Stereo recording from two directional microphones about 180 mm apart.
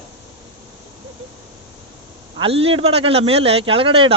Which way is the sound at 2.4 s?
30° right (ahead or behind).